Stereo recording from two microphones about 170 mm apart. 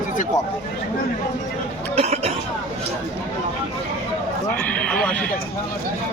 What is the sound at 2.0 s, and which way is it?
Cough, 40° right (ahead or behind).